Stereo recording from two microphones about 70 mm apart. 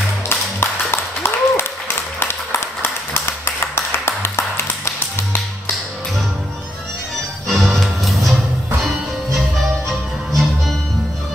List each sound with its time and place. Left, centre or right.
0.3 s a sound: left
2.1 s clapping: left
7.4 s music: centre
9.8 s music: centre